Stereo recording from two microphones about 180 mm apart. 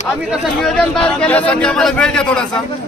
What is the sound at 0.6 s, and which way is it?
Speech, 5° left (ahead or behind).